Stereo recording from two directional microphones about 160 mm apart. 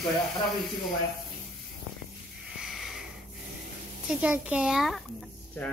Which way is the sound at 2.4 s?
5° right (ahead or behind).